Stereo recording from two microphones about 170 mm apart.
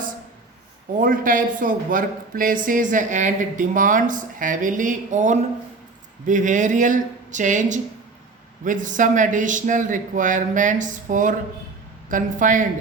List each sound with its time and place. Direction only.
0.9 s speech: 55° right (ahead or behind)